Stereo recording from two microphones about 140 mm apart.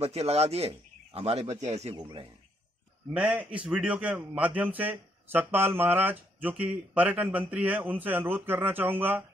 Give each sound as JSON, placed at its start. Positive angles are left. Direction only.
{"t": 0.0, "sound": "a man's voice", "side_deg": -50}
{"t": 2.0, "sound": "speech", "side_deg": -35}
{"t": 3.1, "sound": "a man's voice", "side_deg": -5}